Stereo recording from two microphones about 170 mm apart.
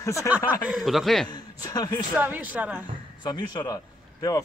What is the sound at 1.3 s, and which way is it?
Speech, 25° left (ahead or behind).